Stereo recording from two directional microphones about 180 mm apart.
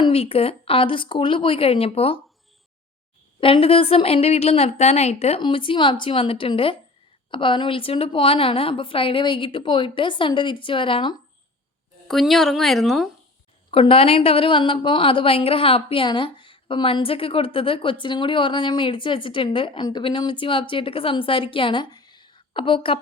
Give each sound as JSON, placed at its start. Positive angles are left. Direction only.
{"t": 0.0, "sound": "a woman's voice", "side_deg": 30}
{"t": 3.4, "sound": "a woman's voice", "side_deg": 30}
{"t": 12.0, "sound": "a woman's voice", "side_deg": 0}
{"t": 13.7, "sound": "speech", "side_deg": 30}